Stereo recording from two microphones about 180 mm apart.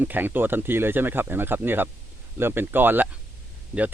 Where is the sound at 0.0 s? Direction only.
10° right (ahead or behind).